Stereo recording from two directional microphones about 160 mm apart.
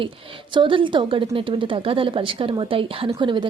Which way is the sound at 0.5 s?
30° right (ahead or behind).